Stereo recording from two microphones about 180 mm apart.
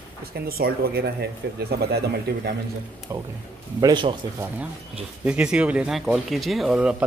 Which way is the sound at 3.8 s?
25° right (ahead or behind).